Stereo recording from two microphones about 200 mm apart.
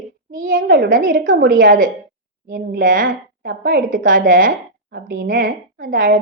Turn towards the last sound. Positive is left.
turn(degrees=-45)  # may be behind; listen again after turning